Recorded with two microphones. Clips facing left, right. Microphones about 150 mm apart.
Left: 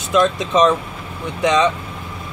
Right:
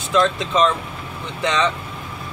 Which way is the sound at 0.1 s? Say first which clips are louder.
Left 2 dB; 15° left (ahead or behind).